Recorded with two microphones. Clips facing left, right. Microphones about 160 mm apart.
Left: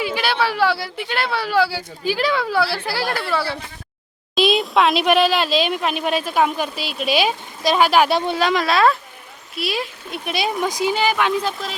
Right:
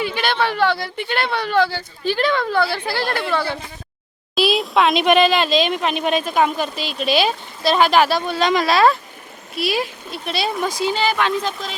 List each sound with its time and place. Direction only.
0.0 s speech: 5° left (ahead or behind)
8.1 s speech: 25° left (ahead or behind)
8.4 s speech: centre (ahead or behind)
10.1 s speech: 15° left (ahead or behind)